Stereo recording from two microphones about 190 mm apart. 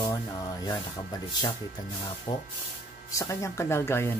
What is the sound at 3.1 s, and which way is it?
Speech, 15° left (ahead or behind).